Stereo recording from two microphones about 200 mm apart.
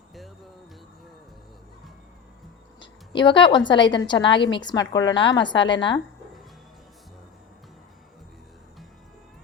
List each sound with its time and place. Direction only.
2.8 s a woman's voice: 25° left (ahead or behind)